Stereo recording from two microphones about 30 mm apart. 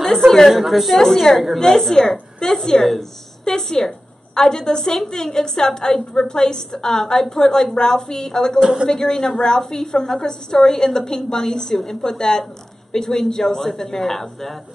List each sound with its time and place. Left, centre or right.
0.0 s a woman's voice: centre
0.5 s a woman's voice: centre
0.9 s a woman's voice: centre
2.8 s a sound: centre
4.4 s a woman's voice: left